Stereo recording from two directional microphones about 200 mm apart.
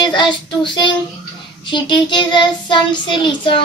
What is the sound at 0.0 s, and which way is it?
Child singing, 25° left (ahead or behind).